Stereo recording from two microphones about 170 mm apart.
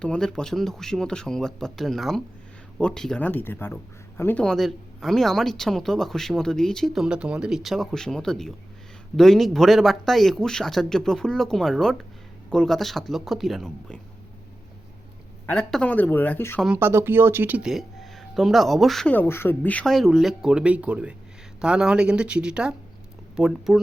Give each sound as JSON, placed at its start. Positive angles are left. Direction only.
{"t": 0.0, "sound": "speech", "side_deg": 5}
{"t": 15.4, "sound": "speech", "side_deg": 10}
{"t": 16.6, "sound": "speech", "side_deg": -5}